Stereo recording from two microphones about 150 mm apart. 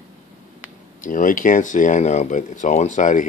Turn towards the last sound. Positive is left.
turn(degrees=60)  # may be behind; listen again after turning